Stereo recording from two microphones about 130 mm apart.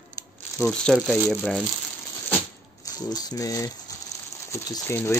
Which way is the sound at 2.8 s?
30° left (ahead or behind).